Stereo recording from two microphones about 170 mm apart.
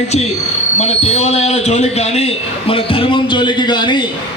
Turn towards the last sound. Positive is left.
turn(degrees=25)  # may be behind; listen again after turning